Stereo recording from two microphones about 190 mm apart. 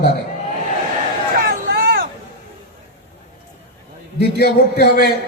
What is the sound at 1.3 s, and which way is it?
Vehicle, 50° right (ahead or behind).